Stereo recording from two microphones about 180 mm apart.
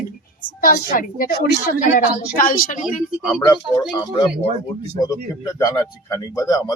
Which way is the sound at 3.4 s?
20° left (ahead or behind).